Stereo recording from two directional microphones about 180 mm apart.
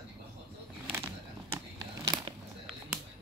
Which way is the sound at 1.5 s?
25° right (ahead or behind).